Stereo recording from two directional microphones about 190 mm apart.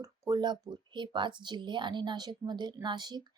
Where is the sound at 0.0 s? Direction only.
20° right (ahead or behind).